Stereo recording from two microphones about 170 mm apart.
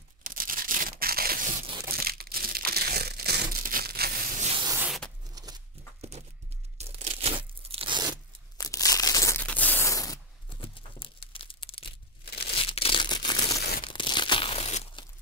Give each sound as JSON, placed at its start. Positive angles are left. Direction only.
{"t": 0.2, "sound": "tearing", "side_deg": -55}
{"t": 1.9, "sound": "crushing", "side_deg": -60}
{"t": 4.6, "sound": "zipper", "side_deg": -10}
{"t": 5.3, "sound": "a sound", "side_deg": -20}
{"t": 5.9, "sound": "horse", "side_deg": -40}
{"t": 6.8, "sound": "tearing", "side_deg": -40}
{"t": 7.7, "sound": "crunch", "side_deg": -30}
{"t": 8.5, "sound": "crumpling", "side_deg": 20}
{"t": 9.4, "sound": "a sound", "side_deg": 10}
{"t": 10.6, "sound": "crumpling", "side_deg": 30}
{"t": 12.5, "sound": "a sound", "side_deg": 35}
{"t": 13.6, "sound": "crumpling", "side_deg": 70}
{"t": 13.8, "sound": "tearing", "side_deg": 30}